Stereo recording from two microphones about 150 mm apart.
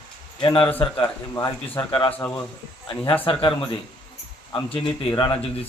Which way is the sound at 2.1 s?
10° left (ahead or behind).